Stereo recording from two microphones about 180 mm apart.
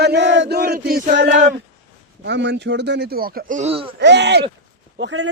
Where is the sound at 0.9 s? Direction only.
55° right (ahead or behind).